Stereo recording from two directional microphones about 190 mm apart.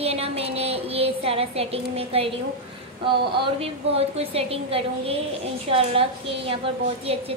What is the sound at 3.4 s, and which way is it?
A woman's voice, 30° right (ahead or behind).